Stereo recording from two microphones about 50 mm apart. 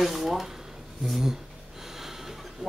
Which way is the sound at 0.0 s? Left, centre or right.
Centre.